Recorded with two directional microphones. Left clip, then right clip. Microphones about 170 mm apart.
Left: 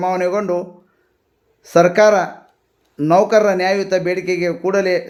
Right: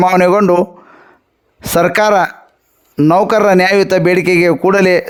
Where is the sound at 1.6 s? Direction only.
75° right (ahead or behind).